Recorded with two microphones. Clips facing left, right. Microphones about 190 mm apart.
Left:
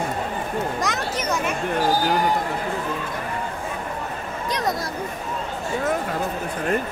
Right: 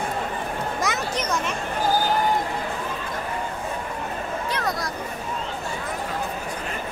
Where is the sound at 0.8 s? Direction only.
Centre (ahead or behind).